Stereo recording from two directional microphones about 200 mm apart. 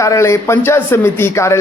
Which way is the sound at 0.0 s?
15° left (ahead or behind).